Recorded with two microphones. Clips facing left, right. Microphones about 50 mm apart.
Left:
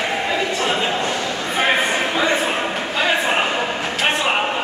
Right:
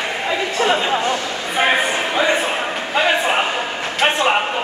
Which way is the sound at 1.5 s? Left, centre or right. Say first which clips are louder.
Right 1 dB; centre.